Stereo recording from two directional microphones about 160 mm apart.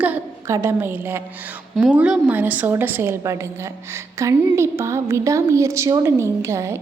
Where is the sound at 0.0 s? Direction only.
15° right (ahead or behind).